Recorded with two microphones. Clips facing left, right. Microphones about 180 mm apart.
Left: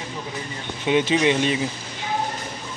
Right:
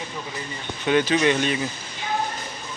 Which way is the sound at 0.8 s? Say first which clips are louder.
Even; 20° left (ahead or behind).